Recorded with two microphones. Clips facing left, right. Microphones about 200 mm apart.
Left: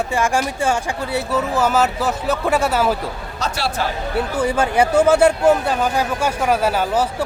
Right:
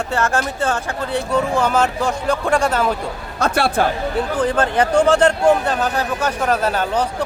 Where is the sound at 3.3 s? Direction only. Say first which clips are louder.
Right 6 dB; 55° right (ahead or behind).